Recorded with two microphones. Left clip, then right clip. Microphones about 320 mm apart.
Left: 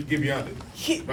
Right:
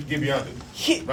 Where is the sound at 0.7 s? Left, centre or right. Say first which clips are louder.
Right 4 dB; right.